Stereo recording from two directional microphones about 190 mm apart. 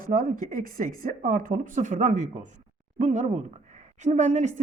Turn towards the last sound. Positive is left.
turn(degrees=-40)  # may be behind; listen again after turning